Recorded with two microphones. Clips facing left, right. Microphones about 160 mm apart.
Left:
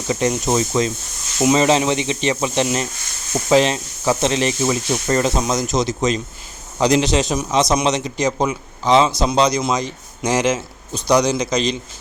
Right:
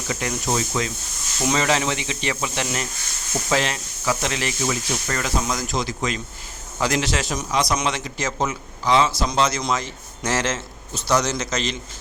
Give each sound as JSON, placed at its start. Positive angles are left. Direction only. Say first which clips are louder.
{"t": 0.1, "sound": "speech", "louder": "left 7 dB", "side_deg": 25}